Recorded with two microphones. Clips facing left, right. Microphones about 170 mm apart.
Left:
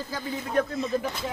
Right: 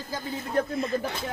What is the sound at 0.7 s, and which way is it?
Speech, 60° right (ahead or behind).